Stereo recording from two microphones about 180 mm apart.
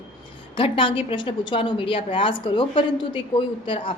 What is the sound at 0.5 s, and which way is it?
A woman's voice, 30° left (ahead or behind).